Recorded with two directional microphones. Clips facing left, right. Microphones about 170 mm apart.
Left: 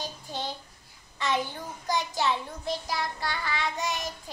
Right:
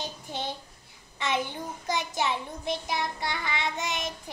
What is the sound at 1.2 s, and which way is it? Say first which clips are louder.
Child singing: even; 20° right (ahead or behind).